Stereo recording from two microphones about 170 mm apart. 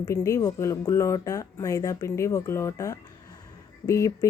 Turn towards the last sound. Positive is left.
turn(degrees=15)  # may be behind; listen again after turning